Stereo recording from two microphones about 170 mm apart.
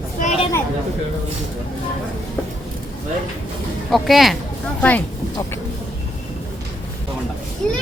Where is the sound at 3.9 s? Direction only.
Centre (ahead or behind).